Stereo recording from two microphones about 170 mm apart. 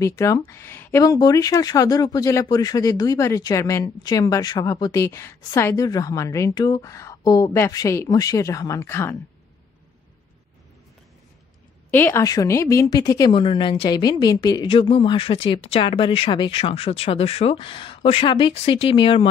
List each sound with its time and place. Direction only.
0.0 s speech: 15° left (ahead or behind)
11.9 s a woman's voice: 10° left (ahead or behind); by 19.2 s 30° left (ahead or behind)